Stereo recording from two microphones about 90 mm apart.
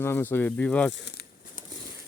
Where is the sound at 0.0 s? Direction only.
25° left (ahead or behind).